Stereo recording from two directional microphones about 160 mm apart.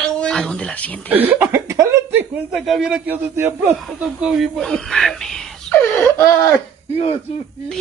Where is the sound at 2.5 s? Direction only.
Centre (ahead or behind).